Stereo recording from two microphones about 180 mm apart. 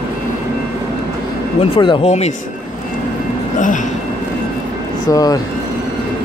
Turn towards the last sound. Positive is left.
turn(degrees=20)  # may be behind; listen again after turning